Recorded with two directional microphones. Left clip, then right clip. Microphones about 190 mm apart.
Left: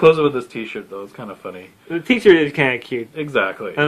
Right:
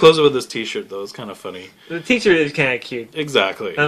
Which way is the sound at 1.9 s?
35° left (ahead or behind).